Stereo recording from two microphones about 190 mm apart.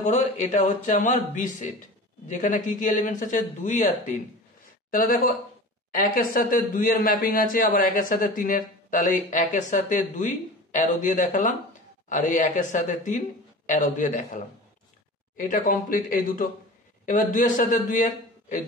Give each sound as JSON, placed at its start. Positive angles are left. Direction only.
{"t": 0.0, "sound": "a man's voice", "side_deg": 40}